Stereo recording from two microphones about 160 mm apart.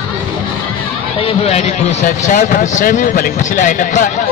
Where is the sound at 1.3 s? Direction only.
40° left (ahead or behind).